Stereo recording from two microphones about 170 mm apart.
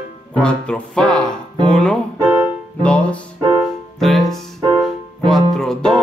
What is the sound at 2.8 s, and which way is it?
Music, 5° left (ahead or behind).